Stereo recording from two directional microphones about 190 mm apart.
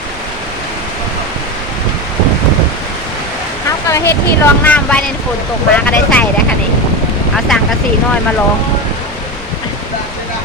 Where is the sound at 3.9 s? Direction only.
15° left (ahead or behind).